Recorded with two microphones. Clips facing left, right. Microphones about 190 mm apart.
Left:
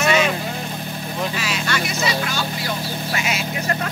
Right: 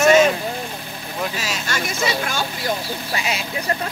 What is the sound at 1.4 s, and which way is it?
Speech, 40° right (ahead or behind).